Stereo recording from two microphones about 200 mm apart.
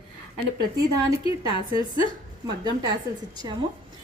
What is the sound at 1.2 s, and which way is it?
Speech, 25° left (ahead or behind).